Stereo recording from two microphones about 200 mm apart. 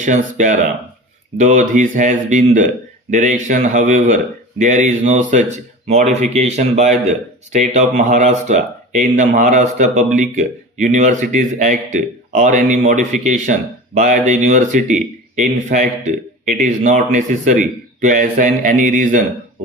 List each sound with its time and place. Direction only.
0.0 s speech: 40° right (ahead or behind)